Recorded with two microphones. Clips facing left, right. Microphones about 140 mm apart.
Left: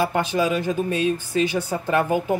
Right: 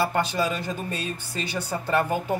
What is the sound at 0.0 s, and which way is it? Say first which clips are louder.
Speech: left 3 dB; 10° left (ahead or behind).